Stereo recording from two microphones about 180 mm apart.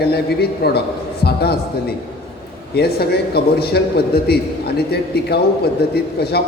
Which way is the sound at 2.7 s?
60° left (ahead or behind).